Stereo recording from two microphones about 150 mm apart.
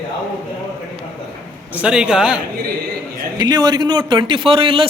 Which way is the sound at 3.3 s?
30° right (ahead or behind).